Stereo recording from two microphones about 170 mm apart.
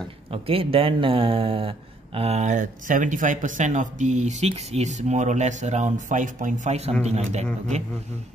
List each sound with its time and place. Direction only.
0.3 s speech: 35° right (ahead or behind)